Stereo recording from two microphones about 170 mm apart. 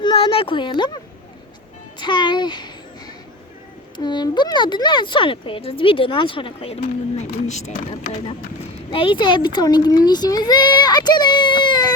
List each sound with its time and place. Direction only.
0.0 s a sound: 30° left (ahead or behind)
2.0 s a child's voice: 25° left (ahead or behind)
3.9 s speech: 25° left (ahead or behind); by 7.6 s 40° left (ahead or behind)
8.9 s speech: 30° left (ahead or behind)